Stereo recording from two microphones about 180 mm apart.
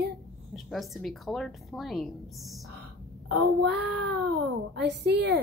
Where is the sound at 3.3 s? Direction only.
65° right (ahead or behind).